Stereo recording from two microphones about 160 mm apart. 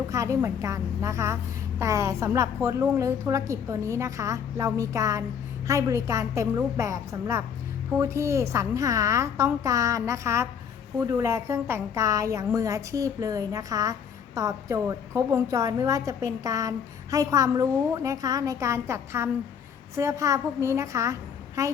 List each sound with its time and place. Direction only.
0.1 s a woman's voice: 20° right (ahead or behind)